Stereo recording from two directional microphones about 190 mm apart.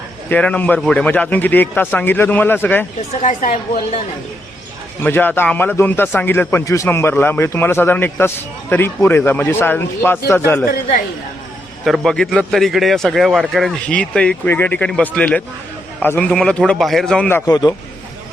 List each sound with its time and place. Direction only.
0.3 s a man's voice: 5° left (ahead or behind)
3.2 s a woman's voice: 40° left (ahead or behind)
4.9 s a man's voice: 10° left (ahead or behind)
11.9 s a man's voice: 5° left (ahead or behind); by 17.7 s 20° left (ahead or behind)